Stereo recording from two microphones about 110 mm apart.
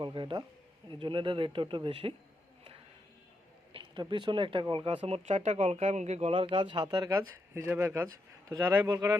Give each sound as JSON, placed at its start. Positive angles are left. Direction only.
{"t": 0.0, "sound": "speech", "side_deg": -50}
{"t": 3.7, "sound": "a sound", "side_deg": -50}
{"t": 4.1, "sound": "speech", "side_deg": -45}
{"t": 5.0, "sound": "speech", "side_deg": -80}
{"t": 6.3, "sound": "speech", "side_deg": -50}
{"t": 7.5, "sound": "speech", "side_deg": -20}
{"t": 8.4, "sound": "speech", "side_deg": -30}